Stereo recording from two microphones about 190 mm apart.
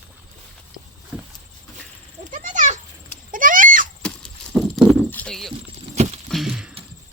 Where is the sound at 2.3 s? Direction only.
40° right (ahead or behind).